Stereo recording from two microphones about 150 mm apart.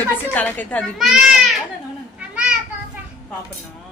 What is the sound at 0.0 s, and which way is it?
Speech, 10° left (ahead or behind).